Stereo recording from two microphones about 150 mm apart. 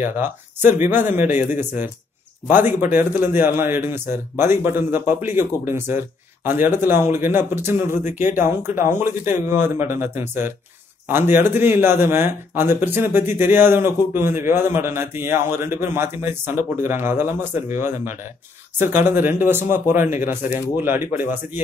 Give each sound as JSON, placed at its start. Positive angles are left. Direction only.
{"t": 0.0, "sound": "speech", "side_deg": -15}